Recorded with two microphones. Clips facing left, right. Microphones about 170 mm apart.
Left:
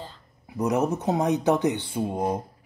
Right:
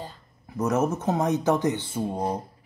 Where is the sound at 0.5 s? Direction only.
15° left (ahead or behind).